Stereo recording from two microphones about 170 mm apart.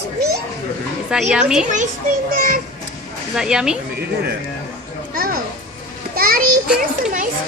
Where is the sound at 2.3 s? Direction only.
60° right (ahead or behind).